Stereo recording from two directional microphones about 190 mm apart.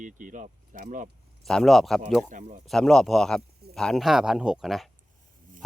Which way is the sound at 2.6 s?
Centre (ahead or behind).